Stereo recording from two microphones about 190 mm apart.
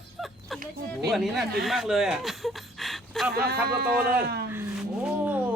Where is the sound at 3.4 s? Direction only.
55° right (ahead or behind).